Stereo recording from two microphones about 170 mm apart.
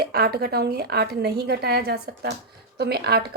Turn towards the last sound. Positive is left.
turn(degrees=-70)  # may be behind; listen again after turning